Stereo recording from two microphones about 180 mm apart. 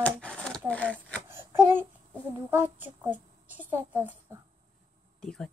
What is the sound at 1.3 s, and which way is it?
Child singing, 10° right (ahead or behind).